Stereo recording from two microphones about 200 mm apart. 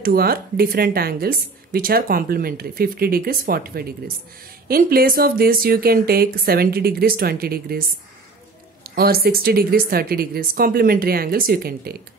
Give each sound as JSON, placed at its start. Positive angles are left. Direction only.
{"t": 0.0, "sound": "speech", "side_deg": -50}
{"t": 8.8, "sound": "speech", "side_deg": -50}